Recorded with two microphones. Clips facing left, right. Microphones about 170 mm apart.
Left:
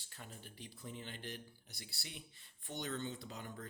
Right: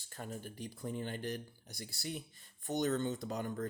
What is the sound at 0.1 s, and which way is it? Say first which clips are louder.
Speech: right 10 dB; 45° right (ahead or behind).